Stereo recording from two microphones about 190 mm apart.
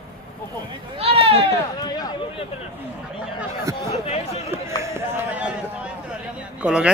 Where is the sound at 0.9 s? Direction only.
30° right (ahead or behind).